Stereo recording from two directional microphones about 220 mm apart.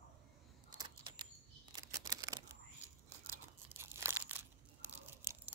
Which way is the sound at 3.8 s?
10° right (ahead or behind).